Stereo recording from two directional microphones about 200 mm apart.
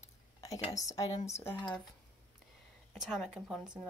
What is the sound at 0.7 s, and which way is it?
Speech, 15° left (ahead or behind).